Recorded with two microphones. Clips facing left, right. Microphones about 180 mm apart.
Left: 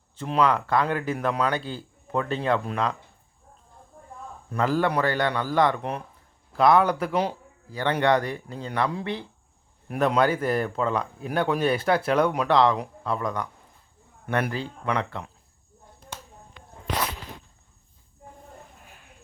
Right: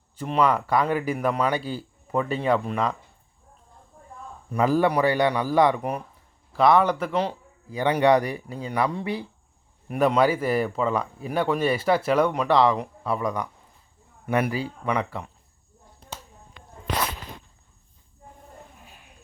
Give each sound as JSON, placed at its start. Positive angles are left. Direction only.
{"t": 0.3, "sound": "a man's voice", "side_deg": -5}
{"t": 4.5, "sound": "a man's voice", "side_deg": -15}
{"t": 7.7, "sound": "a man's voice", "side_deg": -15}
{"t": 14.5, "sound": "a man's voice", "side_deg": -5}